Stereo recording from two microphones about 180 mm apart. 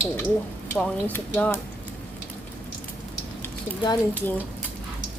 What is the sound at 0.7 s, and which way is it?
Speech, 5° left (ahead or behind).